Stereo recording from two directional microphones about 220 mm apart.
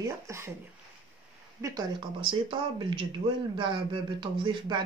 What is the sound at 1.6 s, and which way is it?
Speech, 15° right (ahead or behind).